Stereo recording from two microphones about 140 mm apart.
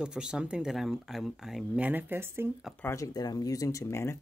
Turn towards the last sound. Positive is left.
turn(degrees=20)  # may be behind; listen again after turning